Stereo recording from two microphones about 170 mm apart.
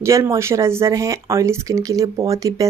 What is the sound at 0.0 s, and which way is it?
Speech, 20° right (ahead or behind).